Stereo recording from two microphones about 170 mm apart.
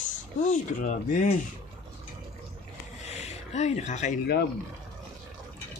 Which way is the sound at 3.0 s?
40° left (ahead or behind).